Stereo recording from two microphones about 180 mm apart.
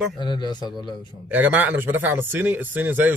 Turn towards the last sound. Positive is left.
turn(degrees=-10)  # may be behind; listen again after turning